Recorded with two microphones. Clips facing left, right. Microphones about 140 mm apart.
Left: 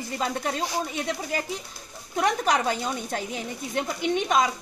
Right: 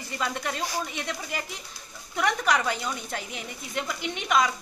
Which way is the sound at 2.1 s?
35° left (ahead or behind).